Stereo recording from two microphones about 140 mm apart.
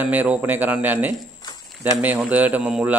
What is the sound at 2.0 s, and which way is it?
Speech, 10° right (ahead or behind).